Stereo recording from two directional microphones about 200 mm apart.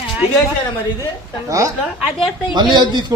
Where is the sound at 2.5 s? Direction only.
20° right (ahead or behind).